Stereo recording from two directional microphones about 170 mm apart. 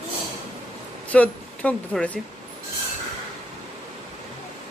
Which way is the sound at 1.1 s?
10° left (ahead or behind).